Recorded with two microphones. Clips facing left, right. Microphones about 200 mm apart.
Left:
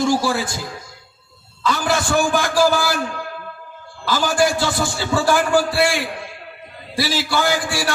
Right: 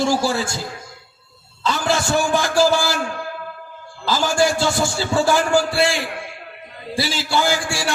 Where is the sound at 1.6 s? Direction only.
25° right (ahead or behind).